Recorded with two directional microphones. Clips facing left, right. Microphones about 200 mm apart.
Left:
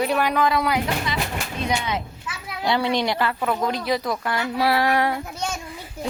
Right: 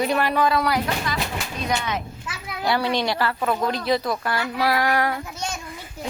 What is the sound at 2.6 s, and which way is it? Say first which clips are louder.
A woman's voice: left 1 dB; 20° left (ahead or behind).